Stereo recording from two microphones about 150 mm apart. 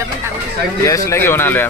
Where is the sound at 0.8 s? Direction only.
20° left (ahead or behind).